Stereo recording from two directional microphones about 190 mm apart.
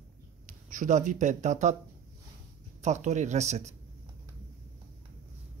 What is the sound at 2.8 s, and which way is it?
Speech, 35° right (ahead or behind).